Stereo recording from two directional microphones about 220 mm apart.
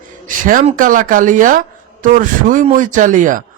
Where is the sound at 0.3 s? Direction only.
35° right (ahead or behind).